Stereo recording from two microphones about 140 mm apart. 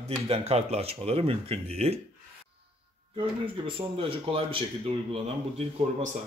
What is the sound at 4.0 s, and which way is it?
Speech, 40° right (ahead or behind).